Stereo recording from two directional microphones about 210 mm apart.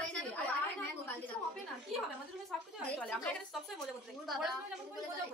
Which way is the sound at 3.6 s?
Centre (ahead or behind).